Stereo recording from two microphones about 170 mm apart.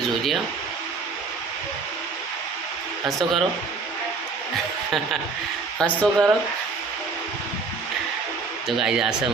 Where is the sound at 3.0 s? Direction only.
Centre (ahead or behind).